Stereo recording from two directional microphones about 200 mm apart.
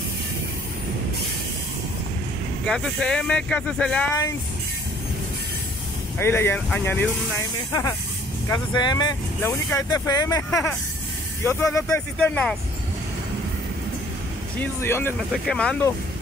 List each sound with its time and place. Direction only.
2.6 s speech: 5° left (ahead or behind)
6.1 s speech: 10° left (ahead or behind)
14.6 s speech: 10° left (ahead or behind)